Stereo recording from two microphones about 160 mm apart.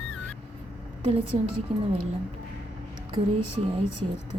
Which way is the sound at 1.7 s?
35° right (ahead or behind).